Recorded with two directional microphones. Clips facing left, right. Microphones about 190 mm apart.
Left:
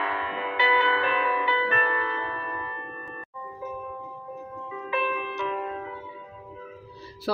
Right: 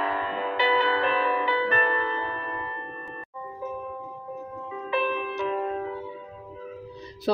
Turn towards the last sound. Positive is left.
turn(degrees=-20)  # may be behind; listen again after turning